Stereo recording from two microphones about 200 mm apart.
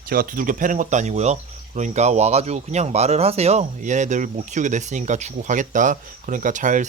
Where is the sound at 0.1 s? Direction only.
45° right (ahead or behind).